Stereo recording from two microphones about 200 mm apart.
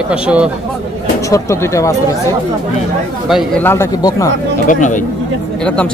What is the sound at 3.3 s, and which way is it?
Speech, centre (ahead or behind).